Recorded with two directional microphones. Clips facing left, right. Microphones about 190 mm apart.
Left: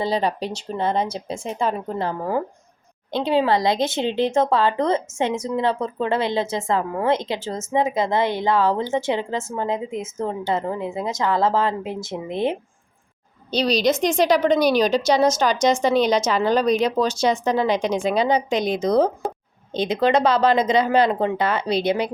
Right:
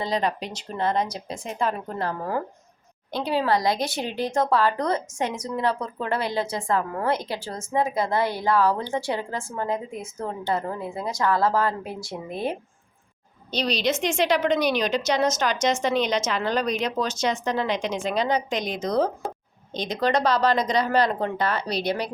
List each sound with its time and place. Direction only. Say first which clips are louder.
0.0 s a woman's voice: left 3 dB; 30° left (ahead or behind)
13.5 s a woman's voice: left 5 dB; 35° left (ahead or behind)
18.1 s a woman's voice: left 3 dB; 5° left (ahead or behind)
18.4 s a woman's voice: left 6 dB; 30° left (ahead or behind)
18.8 s a woman's voice: left 4 dB; 5° left (ahead or behind)
19.2 s a sound: left 5 dB; centre (ahead or behind)
19.7 s speech: left 5 dB; 30° left (ahead or behind)
21.8 s speech: left 5 dB; 25° left (ahead or behind)